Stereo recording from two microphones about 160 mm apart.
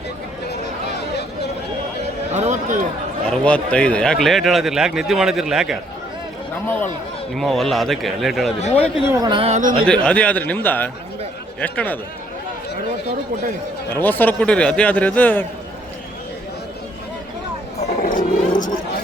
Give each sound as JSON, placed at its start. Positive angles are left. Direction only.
{"t": 2.3, "sound": "a sound", "side_deg": -50}
{"t": 3.2, "sound": "a man's voice", "side_deg": 5}
{"t": 7.3, "sound": "a man's voice", "side_deg": 0}
{"t": 8.6, "sound": "speech", "side_deg": 40}
{"t": 9.1, "sound": "speech", "side_deg": -25}
{"t": 9.4, "sound": "speech", "side_deg": -50}
{"t": 9.8, "sound": "a man's voice", "side_deg": 5}
{"t": 13.9, "sound": "a man's voice", "side_deg": 10}
{"t": 17.8, "sound": "a sound", "side_deg": 55}